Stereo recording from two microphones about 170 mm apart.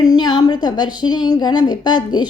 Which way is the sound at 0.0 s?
25° left (ahead or behind).